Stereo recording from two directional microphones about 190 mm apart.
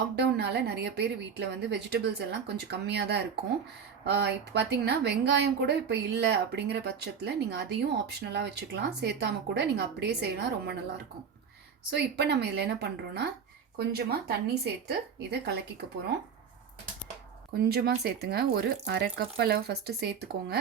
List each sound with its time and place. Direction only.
0.2 s a woman's voice: 60° right (ahead or behind)
11.9 s a woman's voice: 60° right (ahead or behind)
17.5 s a woman's voice: 55° right (ahead or behind)